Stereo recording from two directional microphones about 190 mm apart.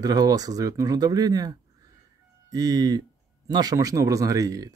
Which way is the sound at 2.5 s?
20° right (ahead or behind).